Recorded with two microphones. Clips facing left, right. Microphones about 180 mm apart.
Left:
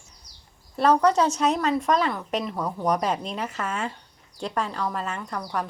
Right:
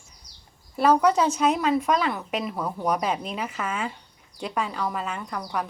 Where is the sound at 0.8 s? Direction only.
5° right (ahead or behind).